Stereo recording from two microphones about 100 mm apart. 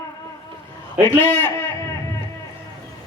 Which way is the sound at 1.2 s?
20° left (ahead or behind).